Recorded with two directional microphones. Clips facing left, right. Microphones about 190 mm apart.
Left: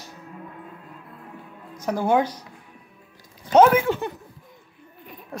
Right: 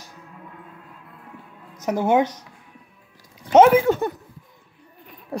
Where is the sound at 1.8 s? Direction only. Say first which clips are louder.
Right 2 dB; 20° right (ahead or behind).